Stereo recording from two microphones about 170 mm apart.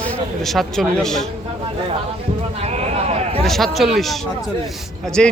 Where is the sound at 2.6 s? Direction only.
40° right (ahead or behind).